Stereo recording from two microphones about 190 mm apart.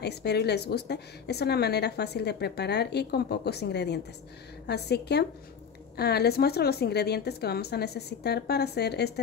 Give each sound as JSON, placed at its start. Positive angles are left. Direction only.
{"t": 0.0, "sound": "a woman's voice", "side_deg": 60}